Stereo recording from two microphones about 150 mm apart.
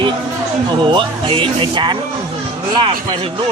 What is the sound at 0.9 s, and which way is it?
Speech, 35° right (ahead or behind).